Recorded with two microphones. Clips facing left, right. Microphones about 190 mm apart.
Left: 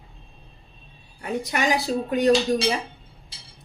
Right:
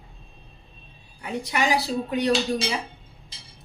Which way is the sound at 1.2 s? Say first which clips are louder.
Left 2 dB; 50° left (ahead or behind).